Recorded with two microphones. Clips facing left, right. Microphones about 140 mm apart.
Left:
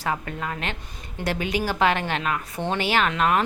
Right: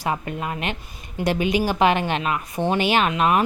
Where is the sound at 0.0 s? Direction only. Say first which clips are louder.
Right 2 dB; 20° right (ahead or behind).